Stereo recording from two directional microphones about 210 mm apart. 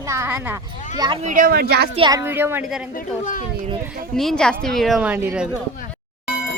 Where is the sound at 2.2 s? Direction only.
10° right (ahead or behind).